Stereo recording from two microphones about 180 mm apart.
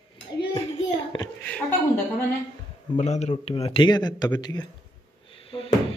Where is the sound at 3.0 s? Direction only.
40° left (ahead or behind); by 4.7 s 20° left (ahead or behind).